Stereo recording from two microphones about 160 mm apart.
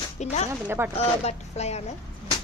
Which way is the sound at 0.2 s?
45° left (ahead or behind).